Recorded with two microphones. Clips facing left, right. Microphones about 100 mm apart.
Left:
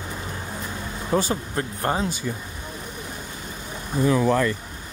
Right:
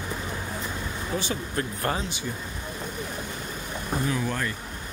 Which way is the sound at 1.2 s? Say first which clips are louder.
Left 4 dB; 35° left (ahead or behind).